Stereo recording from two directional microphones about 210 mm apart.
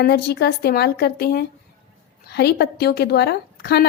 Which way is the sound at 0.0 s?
50° left (ahead or behind).